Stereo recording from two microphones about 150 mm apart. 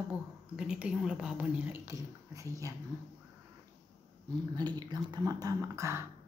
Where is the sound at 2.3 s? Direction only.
20° right (ahead or behind).